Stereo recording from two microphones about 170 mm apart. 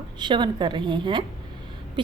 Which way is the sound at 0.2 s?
25° right (ahead or behind).